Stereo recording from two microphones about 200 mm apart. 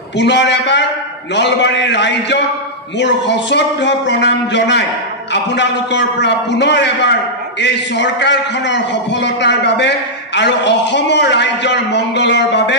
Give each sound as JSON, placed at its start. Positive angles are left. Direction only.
{"t": 0.2, "sound": "a man's voice", "side_deg": 60}